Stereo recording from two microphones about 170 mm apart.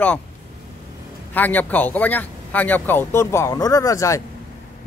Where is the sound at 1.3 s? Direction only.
10° left (ahead or behind).